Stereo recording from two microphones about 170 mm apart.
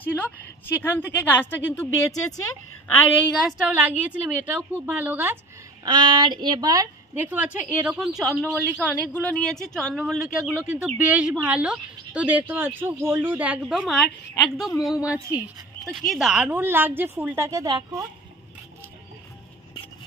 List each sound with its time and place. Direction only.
0.0 s a sound: 10° left (ahead or behind)
0.8 s a woman's voice: 10° left (ahead or behind)
3.4 s a woman's voice: 10° right (ahead or behind)
5.9 s a woman's voice: 25° right (ahead or behind); by 8.9 s 10° right (ahead or behind)
9.1 s a woman's voice: 5° left (ahead or behind); by 18.0 s 20° right (ahead or behind)